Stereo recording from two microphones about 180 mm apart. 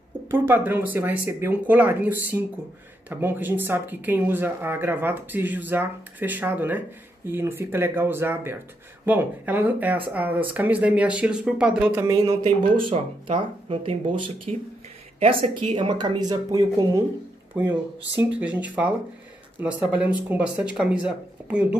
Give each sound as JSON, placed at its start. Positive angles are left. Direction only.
{"t": 0.3, "sound": "speech", "side_deg": -10}
{"t": 12.8, "sound": "speech", "side_deg": -30}
{"t": 18.4, "sound": "speech", "side_deg": -10}